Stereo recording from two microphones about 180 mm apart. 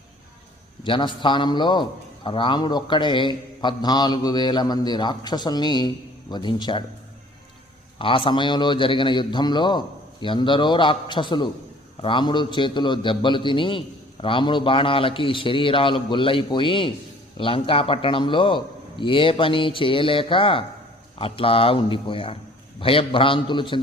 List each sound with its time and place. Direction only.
0.9 s a man's voice: 25° left (ahead or behind)
7.9 s a man's voice: 30° left (ahead or behind)